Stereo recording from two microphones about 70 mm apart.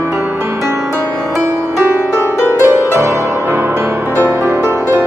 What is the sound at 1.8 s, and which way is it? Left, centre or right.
Music, right.